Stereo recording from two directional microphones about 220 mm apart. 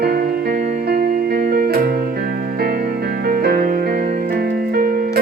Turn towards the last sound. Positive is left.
turn(degrees=-40)  # may be behind; listen again after turning